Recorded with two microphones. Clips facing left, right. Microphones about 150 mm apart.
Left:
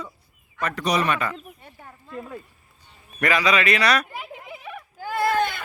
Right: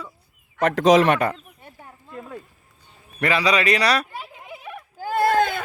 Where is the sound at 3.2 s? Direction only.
30° right (ahead or behind).